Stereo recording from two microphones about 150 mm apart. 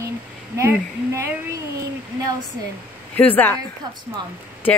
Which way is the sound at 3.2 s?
10° left (ahead or behind).